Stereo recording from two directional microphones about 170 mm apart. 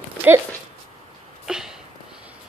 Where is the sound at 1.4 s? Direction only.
5° right (ahead or behind).